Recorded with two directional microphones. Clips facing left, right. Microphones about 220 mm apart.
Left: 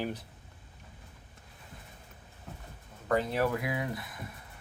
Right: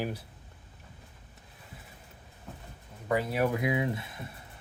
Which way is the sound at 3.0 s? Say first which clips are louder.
Even; 10° right (ahead or behind).